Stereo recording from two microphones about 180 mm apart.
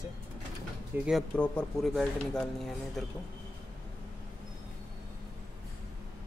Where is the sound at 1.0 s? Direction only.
Centre (ahead or behind).